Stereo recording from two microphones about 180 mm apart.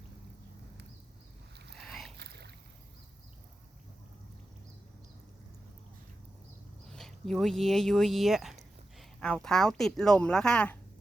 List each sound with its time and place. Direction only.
1.9 s boat: centre (ahead or behind)
2.1 s boat: 65° right (ahead or behind)
6.9 s speech: centre (ahead or behind)